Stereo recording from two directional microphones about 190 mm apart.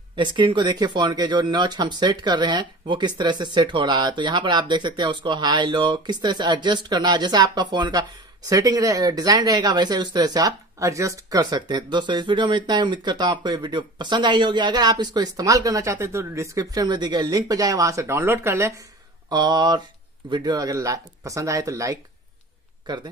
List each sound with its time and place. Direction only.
0.1 s speech: 25° right (ahead or behind)